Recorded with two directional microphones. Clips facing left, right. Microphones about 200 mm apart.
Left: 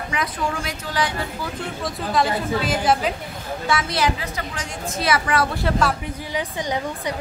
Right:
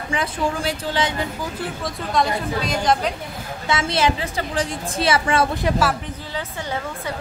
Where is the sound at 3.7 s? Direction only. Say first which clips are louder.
Right 2 dB; 25° right (ahead or behind).